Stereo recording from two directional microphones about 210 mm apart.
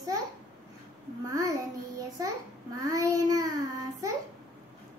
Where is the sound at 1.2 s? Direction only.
15° right (ahead or behind).